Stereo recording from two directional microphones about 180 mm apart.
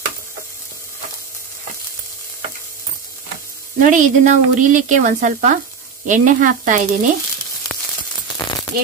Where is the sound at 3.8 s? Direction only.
45° right (ahead or behind).